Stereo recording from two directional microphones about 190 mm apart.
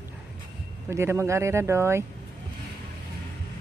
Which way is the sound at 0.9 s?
15° right (ahead or behind).